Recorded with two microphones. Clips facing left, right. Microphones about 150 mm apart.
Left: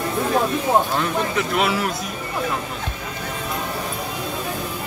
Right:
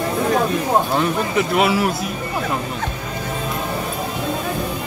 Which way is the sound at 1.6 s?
5° right (ahead or behind).